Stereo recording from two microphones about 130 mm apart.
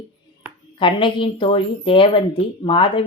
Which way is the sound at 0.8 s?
40° left (ahead or behind).